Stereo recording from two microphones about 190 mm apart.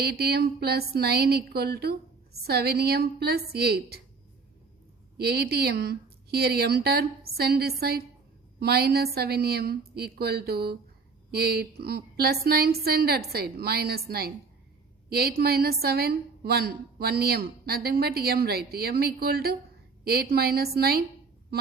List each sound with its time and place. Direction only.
0.0 s a woman's voice: 55° right (ahead or behind)
5.1 s a woman's voice: 55° right (ahead or behind)